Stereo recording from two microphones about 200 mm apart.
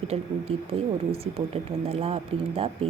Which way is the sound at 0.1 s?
30° right (ahead or behind).